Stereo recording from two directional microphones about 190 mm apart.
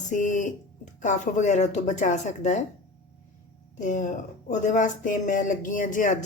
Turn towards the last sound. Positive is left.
turn(degrees=40)  # may be behind; listen again after turning